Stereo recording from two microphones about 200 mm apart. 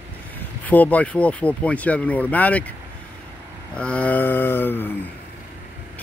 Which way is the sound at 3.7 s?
5° left (ahead or behind).